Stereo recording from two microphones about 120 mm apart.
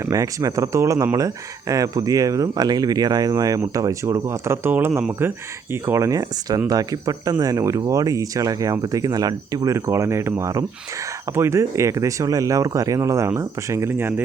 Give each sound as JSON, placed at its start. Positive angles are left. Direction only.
{"t": 0.0, "sound": "speech", "side_deg": -25}